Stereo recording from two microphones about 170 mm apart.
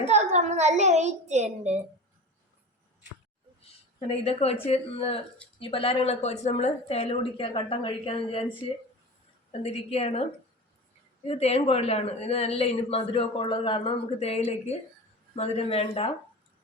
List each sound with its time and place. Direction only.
0.0 s a child's voice: 40° right (ahead or behind)
4.1 s a woman's voice: 35° left (ahead or behind)
9.5 s a woman's voice: 35° left (ahead or behind)
11.3 s a woman's voice: 35° left (ahead or behind)